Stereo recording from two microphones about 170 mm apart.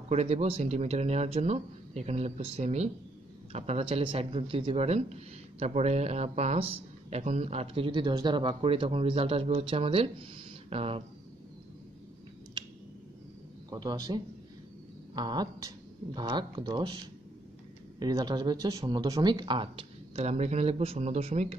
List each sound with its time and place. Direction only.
0.1 s speech: 40° right (ahead or behind)
13.7 s speech: 20° right (ahead or behind)